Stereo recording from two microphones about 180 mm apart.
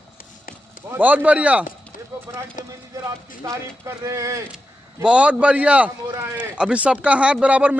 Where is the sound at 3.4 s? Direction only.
15° right (ahead or behind).